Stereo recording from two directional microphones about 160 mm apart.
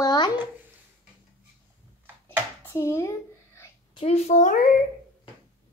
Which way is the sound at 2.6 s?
15° left (ahead or behind).